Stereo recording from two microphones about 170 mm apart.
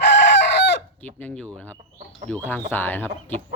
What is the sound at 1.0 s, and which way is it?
Speech, 10° left (ahead or behind).